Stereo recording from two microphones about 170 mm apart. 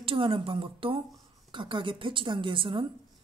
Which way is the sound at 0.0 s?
30° right (ahead or behind).